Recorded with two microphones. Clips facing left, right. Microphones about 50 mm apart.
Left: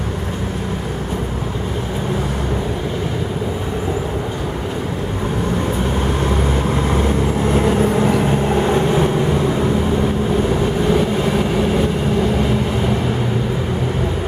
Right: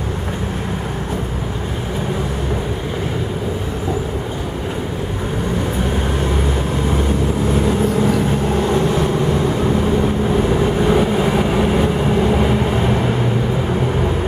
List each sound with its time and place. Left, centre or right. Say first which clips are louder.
8.2 s vehicle: left 1 dB; left
10.5 s vehicle: right 1 dB; centre